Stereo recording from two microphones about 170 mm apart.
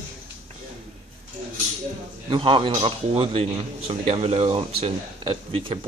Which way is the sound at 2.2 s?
30° right (ahead or behind).